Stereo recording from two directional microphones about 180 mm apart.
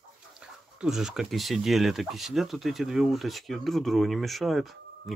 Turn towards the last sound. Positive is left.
turn(degrees=0)  # may be behind; listen again after turning